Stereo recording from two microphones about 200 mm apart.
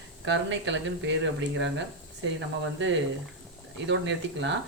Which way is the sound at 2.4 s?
65° right (ahead or behind).